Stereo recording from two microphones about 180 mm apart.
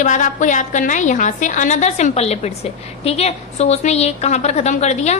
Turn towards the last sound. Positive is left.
turn(degrees=40)  # may be behind; listen again after turning